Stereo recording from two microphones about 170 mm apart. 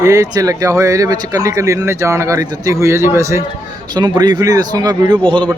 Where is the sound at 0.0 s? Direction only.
20° right (ahead or behind).